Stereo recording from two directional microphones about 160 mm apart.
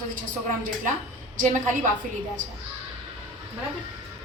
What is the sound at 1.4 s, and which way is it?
Speech, 50° right (ahead or behind).